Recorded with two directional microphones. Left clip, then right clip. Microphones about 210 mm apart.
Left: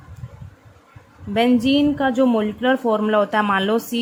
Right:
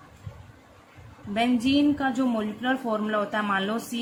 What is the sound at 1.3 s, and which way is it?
Speech, 40° left (ahead or behind).